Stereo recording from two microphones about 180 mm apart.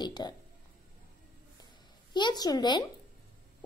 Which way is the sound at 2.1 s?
25° left (ahead or behind).